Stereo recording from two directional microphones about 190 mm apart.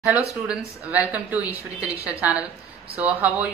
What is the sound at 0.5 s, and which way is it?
Speech, 5° right (ahead or behind).